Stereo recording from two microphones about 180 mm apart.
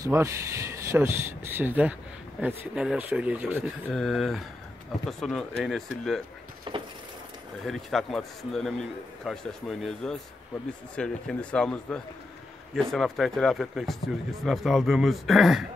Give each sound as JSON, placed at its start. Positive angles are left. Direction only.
{"t": 0.0, "sound": "speech", "side_deg": -15}
{"t": 6.7, "sound": "a sound", "side_deg": -25}
{"t": 7.6, "sound": "speech", "side_deg": 0}